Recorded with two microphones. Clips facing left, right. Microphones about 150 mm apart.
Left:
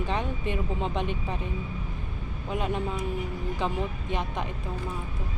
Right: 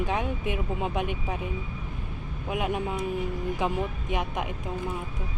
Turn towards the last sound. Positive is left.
turn(degrees=-10)  # may be behind; listen again after turning